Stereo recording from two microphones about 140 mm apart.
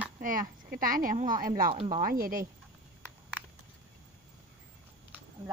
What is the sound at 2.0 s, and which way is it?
Speech, 90° right.